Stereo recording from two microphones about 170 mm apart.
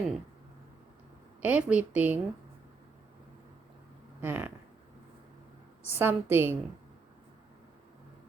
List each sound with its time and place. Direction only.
1.4 s a woman's voice: 10° right (ahead or behind)
4.2 s a woman's voice: 10° right (ahead or behind)
5.9 s a woman's voice: 10° right (ahead or behind)